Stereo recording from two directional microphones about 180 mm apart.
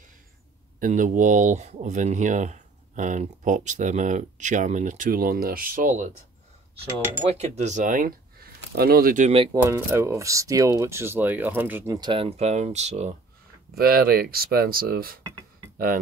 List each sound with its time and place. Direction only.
0.7 s speech: 45° right (ahead or behind)
7.2 s speech: 35° right (ahead or behind)
9.5 s speech: 15° right (ahead or behind); by 13.1 s 40° right (ahead or behind)
13.7 s speech: 55° right (ahead or behind)